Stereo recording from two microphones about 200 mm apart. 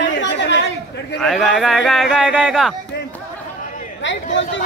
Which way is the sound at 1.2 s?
Centre (ahead or behind).